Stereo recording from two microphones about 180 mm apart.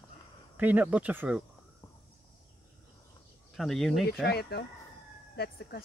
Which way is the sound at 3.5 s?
Centre (ahead or behind).